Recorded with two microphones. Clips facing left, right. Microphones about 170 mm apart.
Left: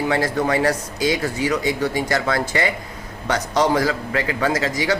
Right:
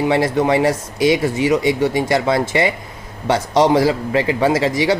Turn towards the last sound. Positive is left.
turn(degrees=-25)  # may be behind; listen again after turning